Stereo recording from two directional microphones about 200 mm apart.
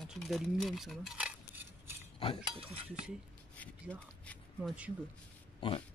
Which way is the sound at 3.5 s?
5° left (ahead or behind).